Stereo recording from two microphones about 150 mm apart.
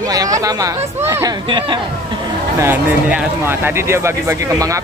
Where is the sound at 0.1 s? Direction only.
25° right (ahead or behind).